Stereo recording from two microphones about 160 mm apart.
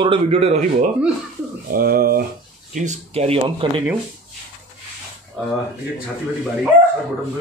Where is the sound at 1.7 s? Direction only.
65° right (ahead or behind).